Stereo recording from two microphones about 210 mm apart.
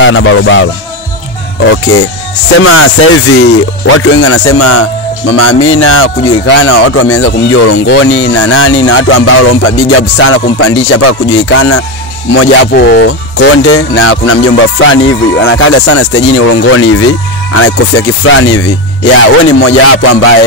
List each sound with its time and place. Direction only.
0.0 s speech: 65° left (ahead or behind)
2.6 s speech: 90° left; by 11.8 s 75° left (ahead or behind)
12.7 s speech: 50° left (ahead or behind); by 16.8 s 80° left
17.6 s speech: 90° left